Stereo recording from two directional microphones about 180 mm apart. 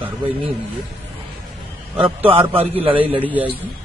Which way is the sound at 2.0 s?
30° right (ahead or behind).